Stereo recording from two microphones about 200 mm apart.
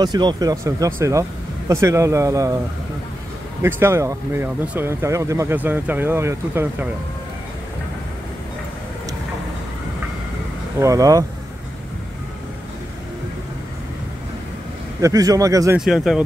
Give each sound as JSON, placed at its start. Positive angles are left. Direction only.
{"t": 0.0, "sound": "speech", "side_deg": -20}
{"t": 3.6, "sound": "speech", "side_deg": -10}
{"t": 10.8, "sound": "speech", "side_deg": -15}
{"t": 15.0, "sound": "speech", "side_deg": -15}
{"t": 15.8, "sound": "speech", "side_deg": 0}